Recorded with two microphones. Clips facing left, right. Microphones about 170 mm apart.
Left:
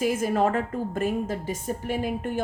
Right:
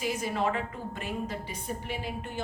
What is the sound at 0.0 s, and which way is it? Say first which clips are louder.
A woman's voice: left 7 dB; 50° left (ahead or behind).